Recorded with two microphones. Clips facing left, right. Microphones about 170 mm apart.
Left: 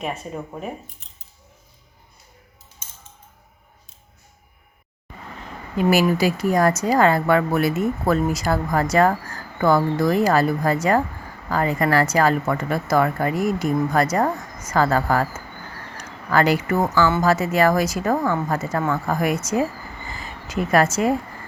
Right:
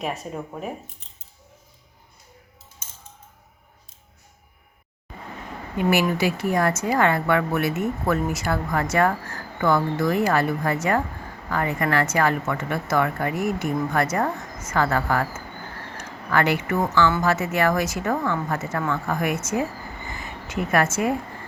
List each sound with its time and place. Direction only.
0.0 s speech: centre (ahead or behind)
5.9 s speech: 35° left (ahead or behind)
20.5 s speech: 35° left (ahead or behind)